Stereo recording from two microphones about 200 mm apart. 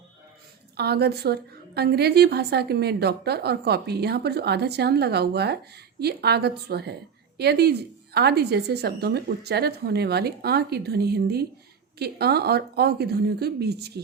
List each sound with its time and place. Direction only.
0.8 s a woman's voice: 55° right (ahead or behind)